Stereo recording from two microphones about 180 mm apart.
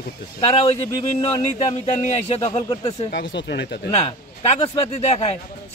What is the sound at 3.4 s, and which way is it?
Speech, 70° left (ahead or behind).